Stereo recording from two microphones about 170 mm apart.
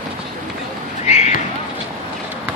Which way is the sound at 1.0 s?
40° left (ahead or behind).